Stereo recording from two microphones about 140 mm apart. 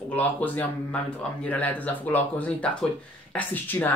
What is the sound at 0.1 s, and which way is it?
Speech, 10° left (ahead or behind).